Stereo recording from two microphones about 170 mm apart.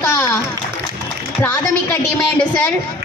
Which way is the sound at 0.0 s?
15° left (ahead or behind).